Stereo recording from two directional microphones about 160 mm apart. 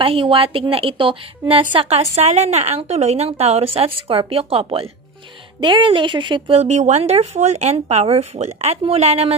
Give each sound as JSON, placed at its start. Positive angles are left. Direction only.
{"t": 0.0, "sound": "a woman's voice", "side_deg": -35}